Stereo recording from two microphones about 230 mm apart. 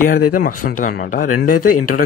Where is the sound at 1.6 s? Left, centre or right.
Left.